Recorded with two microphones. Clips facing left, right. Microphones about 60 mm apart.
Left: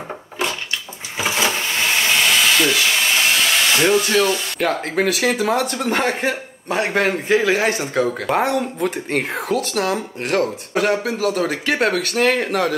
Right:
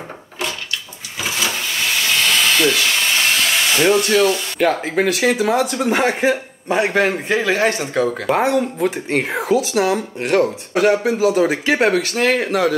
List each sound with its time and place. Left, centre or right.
1.2 s vehicle: left
2.3 s speech: centre